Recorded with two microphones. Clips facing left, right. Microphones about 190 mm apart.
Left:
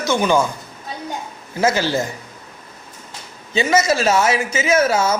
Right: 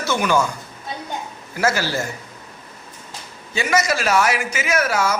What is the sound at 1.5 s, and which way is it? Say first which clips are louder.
Speech: left 3 dB; 20° left (ahead or behind).